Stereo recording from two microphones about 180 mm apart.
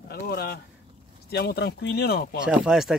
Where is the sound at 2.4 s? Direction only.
5° right (ahead or behind).